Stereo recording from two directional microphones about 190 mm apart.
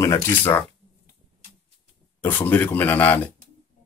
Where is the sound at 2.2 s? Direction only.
10° left (ahead or behind).